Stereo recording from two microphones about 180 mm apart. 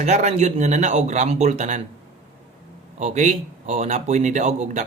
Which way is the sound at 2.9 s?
40° right (ahead or behind).